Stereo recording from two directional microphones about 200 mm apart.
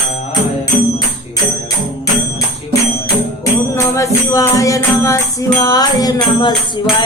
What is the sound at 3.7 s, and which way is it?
Music, 15° left (ahead or behind).